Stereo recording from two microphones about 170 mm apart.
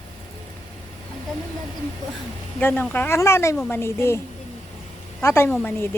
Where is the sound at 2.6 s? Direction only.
10° left (ahead or behind).